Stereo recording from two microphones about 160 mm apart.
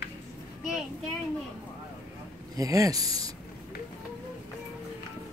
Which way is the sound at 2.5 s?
20° right (ahead or behind).